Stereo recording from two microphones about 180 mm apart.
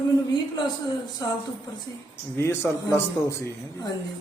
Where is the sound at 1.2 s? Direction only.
20° left (ahead or behind).